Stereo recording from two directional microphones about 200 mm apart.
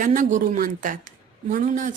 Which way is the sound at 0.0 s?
40° right (ahead or behind).